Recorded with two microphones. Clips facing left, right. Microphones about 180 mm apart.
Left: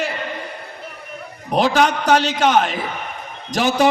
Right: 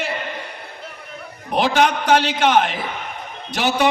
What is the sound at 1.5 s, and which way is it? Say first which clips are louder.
A man's voice: left 1 dB; 40° left (ahead or behind).